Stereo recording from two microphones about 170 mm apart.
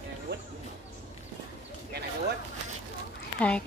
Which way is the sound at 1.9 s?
75° right (ahead or behind).